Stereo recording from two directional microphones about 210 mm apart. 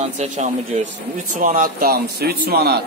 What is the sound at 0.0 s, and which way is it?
A man's voice, 35° right (ahead or behind).